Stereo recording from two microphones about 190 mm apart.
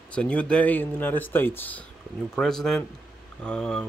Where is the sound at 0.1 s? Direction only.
5° left (ahead or behind).